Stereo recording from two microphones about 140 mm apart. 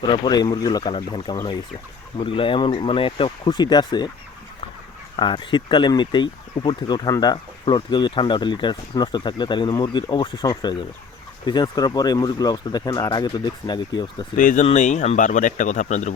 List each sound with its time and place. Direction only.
0.1 s speech: 30° left (ahead or behind)
5.1 s speech: 35° left (ahead or behind)
14.3 s speech: 65° left (ahead or behind)